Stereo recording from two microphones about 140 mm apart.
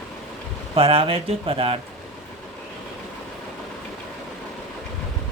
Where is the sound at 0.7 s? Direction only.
45° right (ahead or behind).